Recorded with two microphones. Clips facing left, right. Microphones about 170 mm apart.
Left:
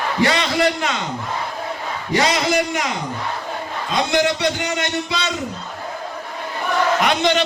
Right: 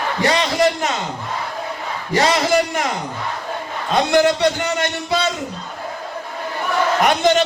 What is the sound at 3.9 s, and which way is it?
Speech, 55° right (ahead or behind).